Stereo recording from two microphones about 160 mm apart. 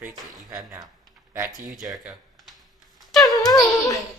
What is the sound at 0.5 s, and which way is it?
Speech, 20° right (ahead or behind).